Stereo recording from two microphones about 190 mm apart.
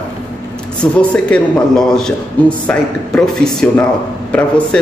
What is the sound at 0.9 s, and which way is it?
A man's voice, 5° left (ahead or behind).